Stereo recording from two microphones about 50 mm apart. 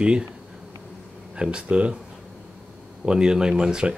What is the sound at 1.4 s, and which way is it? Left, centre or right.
Speech, centre.